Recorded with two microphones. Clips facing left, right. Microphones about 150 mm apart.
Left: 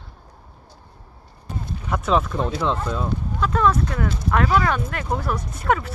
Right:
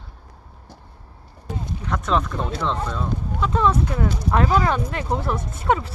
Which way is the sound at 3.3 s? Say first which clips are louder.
Left 1 dB; 20° right (ahead or behind).